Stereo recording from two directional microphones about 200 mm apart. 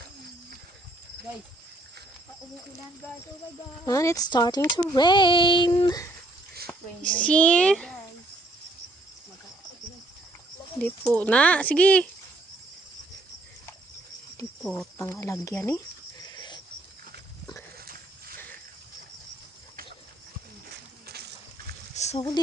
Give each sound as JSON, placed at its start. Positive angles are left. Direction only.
{"t": 3.8, "sound": "speech", "side_deg": 15}
{"t": 6.7, "sound": "speech", "side_deg": 5}
{"t": 11.1, "sound": "speech", "side_deg": 5}
{"t": 14.6, "sound": "speech", "side_deg": 5}
{"t": 21.1, "sound": "a sound", "side_deg": -55}
{"t": 21.9, "sound": "a sound", "side_deg": 35}